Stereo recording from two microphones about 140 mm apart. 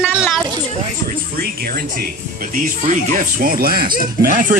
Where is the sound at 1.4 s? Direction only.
90° right.